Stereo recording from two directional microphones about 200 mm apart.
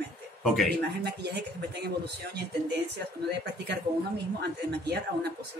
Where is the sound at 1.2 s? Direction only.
55° right (ahead or behind).